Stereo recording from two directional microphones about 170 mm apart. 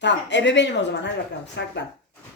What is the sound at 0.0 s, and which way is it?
A woman's voice, 90° left.